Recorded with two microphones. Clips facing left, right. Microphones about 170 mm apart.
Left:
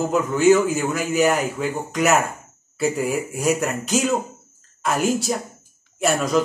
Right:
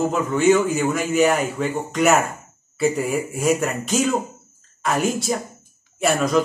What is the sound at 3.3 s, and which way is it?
A man's voice, centre (ahead or behind).